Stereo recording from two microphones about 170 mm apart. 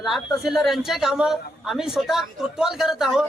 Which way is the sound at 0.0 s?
Centre (ahead or behind).